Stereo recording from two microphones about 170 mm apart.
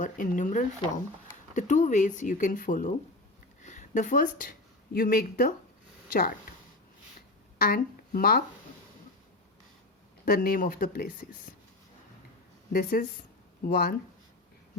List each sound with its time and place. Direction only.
0.0 s speech: 50° left (ahead or behind)
7.6 s a woman's voice: 60° left (ahead or behind)
10.2 s speech: 60° left (ahead or behind)
12.7 s speech: 55° left (ahead or behind)